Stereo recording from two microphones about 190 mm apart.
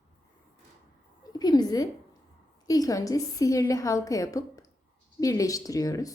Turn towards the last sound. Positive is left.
turn(degrees=20)  # may be behind; listen again after turning